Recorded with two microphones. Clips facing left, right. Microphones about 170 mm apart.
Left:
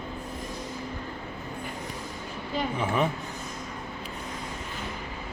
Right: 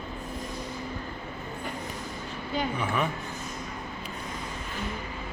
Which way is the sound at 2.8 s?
25° left (ahead or behind).